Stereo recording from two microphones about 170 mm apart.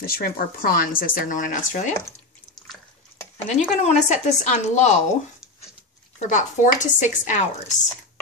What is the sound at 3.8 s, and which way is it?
A woman's voice, 45° left (ahead or behind).